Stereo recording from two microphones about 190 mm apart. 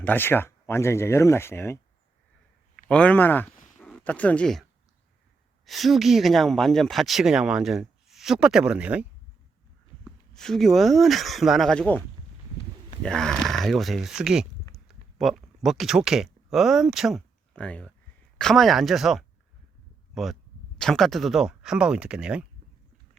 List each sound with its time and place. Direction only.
0.0 s speech: 10° left (ahead or behind)
5.6 s speech: centre (ahead or behind)
10.3 s speech: centre (ahead or behind)
13.0 s speech: 5° left (ahead or behind)
20.7 s speech: centre (ahead or behind)